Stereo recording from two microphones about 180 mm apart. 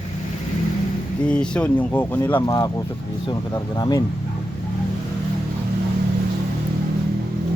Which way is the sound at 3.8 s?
20° left (ahead or behind).